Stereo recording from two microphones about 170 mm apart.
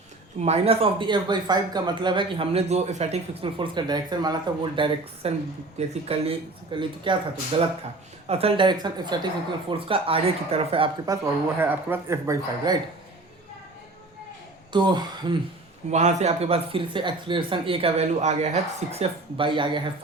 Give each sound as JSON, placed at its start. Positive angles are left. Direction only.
{"t": 0.3, "sound": "speech", "side_deg": -40}
{"t": 14.7, "sound": "speech", "side_deg": -25}
{"t": 15.9, "sound": "speech", "side_deg": -40}